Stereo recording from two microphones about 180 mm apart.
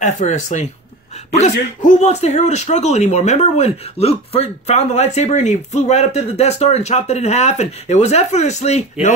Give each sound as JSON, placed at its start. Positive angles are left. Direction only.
{"t": 0.0, "sound": "speech", "side_deg": 40}
{"t": 1.8, "sound": "speech", "side_deg": 40}